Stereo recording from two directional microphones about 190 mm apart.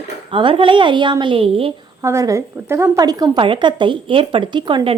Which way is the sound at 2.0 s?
15° right (ahead or behind).